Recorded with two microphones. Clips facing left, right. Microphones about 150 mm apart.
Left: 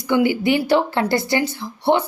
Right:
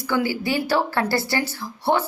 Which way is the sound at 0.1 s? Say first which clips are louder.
Left 6 dB; 20° left (ahead or behind).